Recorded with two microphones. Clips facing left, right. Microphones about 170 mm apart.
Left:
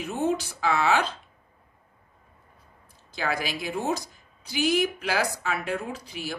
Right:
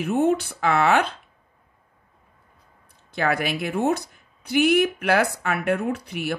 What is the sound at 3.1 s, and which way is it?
Speech, 60° right (ahead or behind).